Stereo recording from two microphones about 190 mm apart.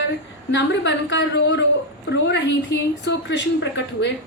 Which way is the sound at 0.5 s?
65° left (ahead or behind).